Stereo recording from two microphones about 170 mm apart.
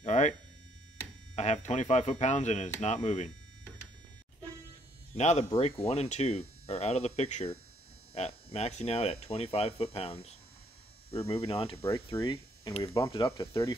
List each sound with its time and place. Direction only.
0.0 s a sound: 45° left (ahead or behind)
1.3 s speech: 40° left (ahead or behind)
5.1 s speech: 40° left (ahead or behind); by 13.7 s 25° left (ahead or behind)